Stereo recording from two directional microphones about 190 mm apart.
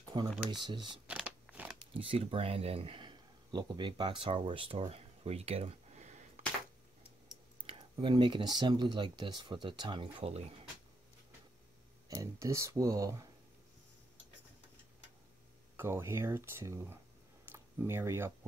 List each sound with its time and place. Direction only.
0.1 s speech: 25° right (ahead or behind)
1.0 s a sound: 5° right (ahead or behind)
1.8 s speech: 30° right (ahead or behind)
7.6 s speech: 25° right (ahead or behind)
12.1 s speech: 15° right (ahead or behind)
15.7 s speech: 15° right (ahead or behind)
17.5 s a sound: 10° right (ahead or behind)